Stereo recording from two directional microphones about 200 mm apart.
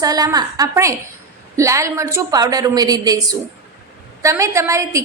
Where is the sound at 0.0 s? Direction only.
20° right (ahead or behind).